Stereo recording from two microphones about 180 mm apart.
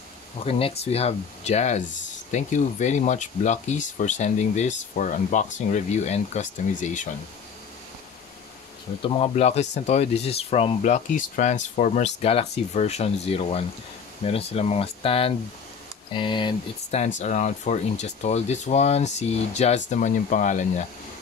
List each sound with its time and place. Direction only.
0.5 s speech: 30° left (ahead or behind)
9.0 s speech: 30° left (ahead or behind)
17.2 s speech: 40° left (ahead or behind)